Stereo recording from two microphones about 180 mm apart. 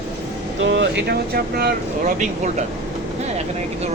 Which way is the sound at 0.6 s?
85° right.